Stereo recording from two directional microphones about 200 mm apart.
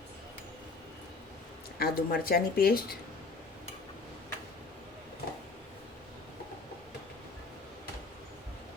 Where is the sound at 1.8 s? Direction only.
50° left (ahead or behind).